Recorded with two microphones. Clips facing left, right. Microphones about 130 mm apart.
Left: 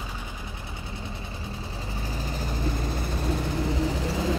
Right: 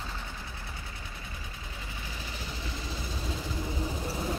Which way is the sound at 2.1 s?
40° left (ahead or behind).